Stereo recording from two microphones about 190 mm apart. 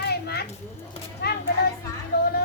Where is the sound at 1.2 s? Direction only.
60° left (ahead or behind).